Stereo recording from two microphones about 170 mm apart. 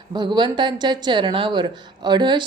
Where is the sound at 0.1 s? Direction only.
25° right (ahead or behind).